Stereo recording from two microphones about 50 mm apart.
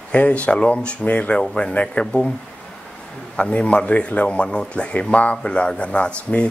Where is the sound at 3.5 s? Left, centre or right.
Left.